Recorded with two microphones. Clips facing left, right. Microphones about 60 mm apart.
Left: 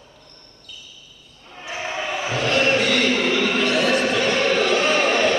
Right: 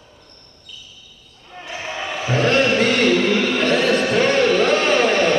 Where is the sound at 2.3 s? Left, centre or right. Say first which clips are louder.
Right 3 dB; right.